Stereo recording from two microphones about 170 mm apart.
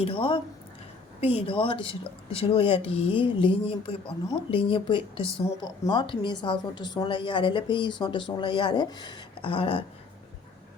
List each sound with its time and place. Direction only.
0.0 s a woman's voice: 30° left (ahead or behind)